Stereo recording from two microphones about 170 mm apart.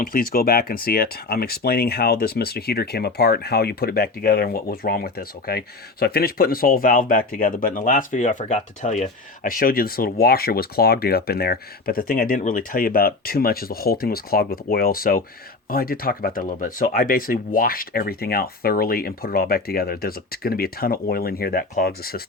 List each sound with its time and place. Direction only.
0.0 s speech: 55° left (ahead or behind)